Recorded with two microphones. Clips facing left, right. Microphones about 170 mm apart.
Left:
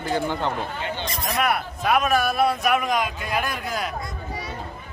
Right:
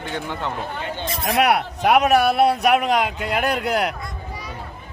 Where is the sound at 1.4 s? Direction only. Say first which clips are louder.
Right 6 dB; 70° right (ahead or behind).